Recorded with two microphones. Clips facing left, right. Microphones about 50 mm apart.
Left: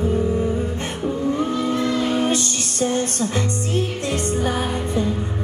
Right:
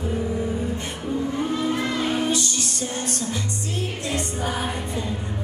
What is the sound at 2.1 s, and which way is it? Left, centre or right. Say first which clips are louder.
Music: left 3 dB; left.